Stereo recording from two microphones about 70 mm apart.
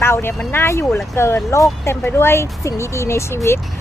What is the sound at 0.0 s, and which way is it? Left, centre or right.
Speech, left.